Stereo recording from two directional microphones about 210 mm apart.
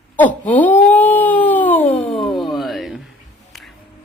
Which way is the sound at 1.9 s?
30° left (ahead or behind).